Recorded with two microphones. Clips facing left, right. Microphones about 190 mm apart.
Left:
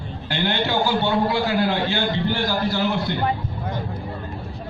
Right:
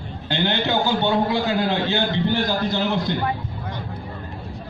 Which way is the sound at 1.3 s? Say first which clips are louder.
Even; 20° right (ahead or behind).